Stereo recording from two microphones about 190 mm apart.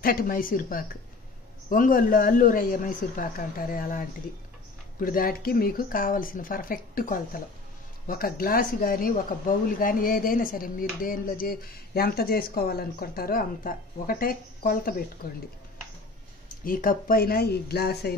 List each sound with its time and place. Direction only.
0.0 s speech: 50° left (ahead or behind)
16.6 s speech: 50° left (ahead or behind)